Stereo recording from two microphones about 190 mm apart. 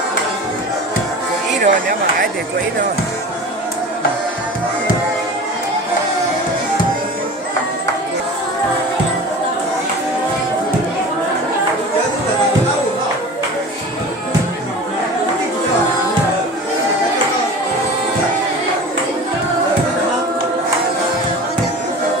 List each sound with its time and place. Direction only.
1.6 s speech: 50° right (ahead or behind)